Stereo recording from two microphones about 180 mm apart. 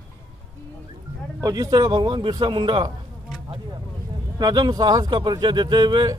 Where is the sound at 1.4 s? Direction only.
20° right (ahead or behind).